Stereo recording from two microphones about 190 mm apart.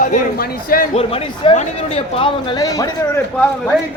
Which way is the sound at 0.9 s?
30° left (ahead or behind).